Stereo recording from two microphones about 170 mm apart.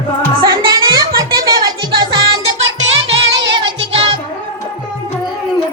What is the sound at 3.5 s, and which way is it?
Music, 30° right (ahead or behind).